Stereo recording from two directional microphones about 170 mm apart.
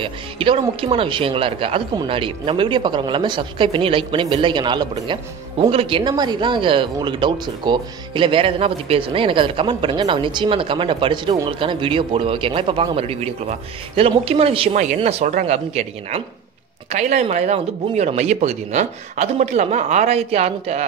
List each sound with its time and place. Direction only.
0.0 s speech: 30° right (ahead or behind)